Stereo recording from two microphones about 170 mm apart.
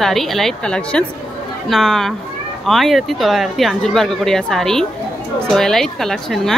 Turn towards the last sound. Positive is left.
turn(degrees=0)  # may be behind; listen again after turning